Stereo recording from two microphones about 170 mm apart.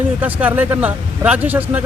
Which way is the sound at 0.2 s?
10° right (ahead or behind).